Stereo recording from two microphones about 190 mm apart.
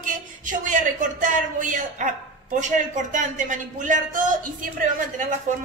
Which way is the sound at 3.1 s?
40° right (ahead or behind).